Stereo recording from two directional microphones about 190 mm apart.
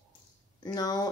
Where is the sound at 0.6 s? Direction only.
20° left (ahead or behind).